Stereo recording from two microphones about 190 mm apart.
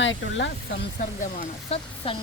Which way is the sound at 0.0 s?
75° left (ahead or behind).